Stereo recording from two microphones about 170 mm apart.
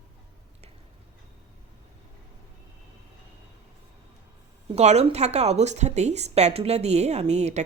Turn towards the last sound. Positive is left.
turn(degrees=-40)  # may be behind; listen again after turning